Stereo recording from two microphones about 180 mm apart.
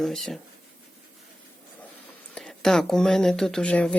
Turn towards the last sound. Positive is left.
turn(degrees=5)  # may be behind; listen again after turning